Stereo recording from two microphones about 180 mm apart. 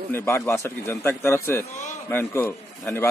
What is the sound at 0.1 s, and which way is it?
A man's voice, 10° left (ahead or behind).